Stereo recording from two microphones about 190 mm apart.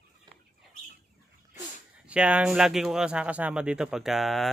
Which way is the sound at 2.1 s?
5° right (ahead or behind).